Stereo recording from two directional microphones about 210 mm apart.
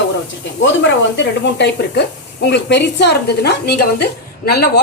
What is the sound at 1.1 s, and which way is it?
A woman's voice, 55° left (ahead or behind).